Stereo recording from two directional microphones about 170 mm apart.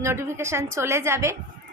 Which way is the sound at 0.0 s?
15° right (ahead or behind).